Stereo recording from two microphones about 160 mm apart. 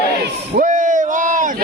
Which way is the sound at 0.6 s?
55° right (ahead or behind).